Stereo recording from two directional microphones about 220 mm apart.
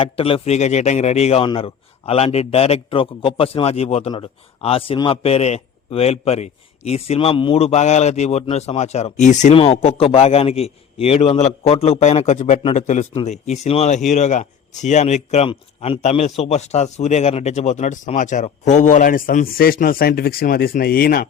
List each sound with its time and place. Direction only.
0.0 s a man's voice: 25° left (ahead or behind); by 21.2 s 40° left (ahead or behind)